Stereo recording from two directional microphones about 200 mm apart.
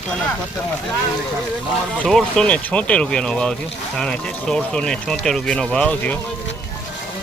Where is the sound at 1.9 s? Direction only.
Centre (ahead or behind).